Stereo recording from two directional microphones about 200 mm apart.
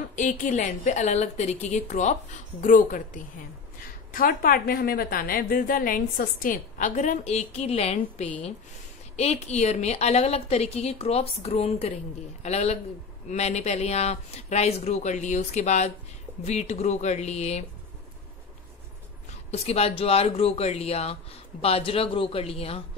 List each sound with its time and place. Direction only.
0.1 s a woman's voice: 40° left (ahead or behind)
19.5 s speech: 30° left (ahead or behind)